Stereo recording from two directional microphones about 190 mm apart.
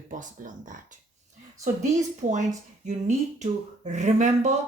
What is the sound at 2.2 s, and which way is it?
Speech, 40° right (ahead or behind).